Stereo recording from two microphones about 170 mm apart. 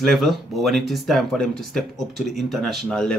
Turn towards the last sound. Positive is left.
turn(degrees=0)  # may be behind; listen again after turning